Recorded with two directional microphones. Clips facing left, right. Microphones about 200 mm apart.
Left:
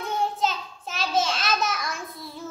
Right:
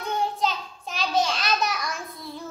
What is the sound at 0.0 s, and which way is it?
Child singing, centre (ahead or behind).